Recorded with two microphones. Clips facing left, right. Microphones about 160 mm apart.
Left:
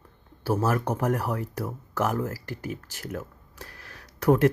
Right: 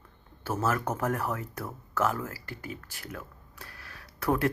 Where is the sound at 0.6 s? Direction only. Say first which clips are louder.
Left 1 dB; 35° left (ahead or behind).